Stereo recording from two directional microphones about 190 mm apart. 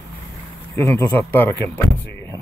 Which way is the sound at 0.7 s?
10° left (ahead or behind).